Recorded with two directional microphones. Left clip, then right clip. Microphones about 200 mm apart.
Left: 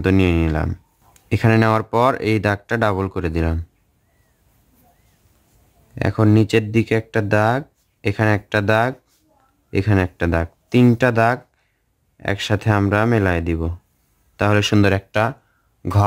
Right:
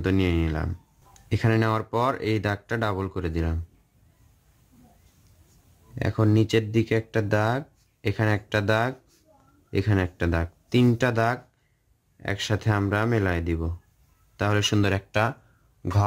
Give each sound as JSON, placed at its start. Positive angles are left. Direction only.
{"t": 0.0, "sound": "speech", "side_deg": 25}
{"t": 5.9, "sound": "speech", "side_deg": 25}